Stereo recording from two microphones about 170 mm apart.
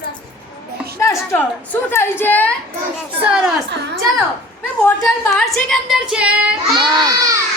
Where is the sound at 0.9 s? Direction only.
15° left (ahead or behind).